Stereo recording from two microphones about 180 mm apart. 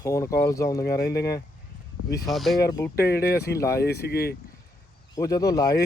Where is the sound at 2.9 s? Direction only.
60° left (ahead or behind).